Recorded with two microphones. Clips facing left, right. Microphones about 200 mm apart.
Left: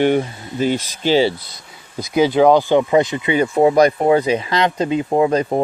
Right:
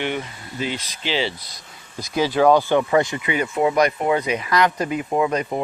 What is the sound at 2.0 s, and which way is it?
Speech, 20° left (ahead or behind).